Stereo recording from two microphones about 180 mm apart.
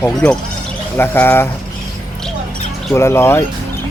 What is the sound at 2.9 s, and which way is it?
Speech, 15° left (ahead or behind).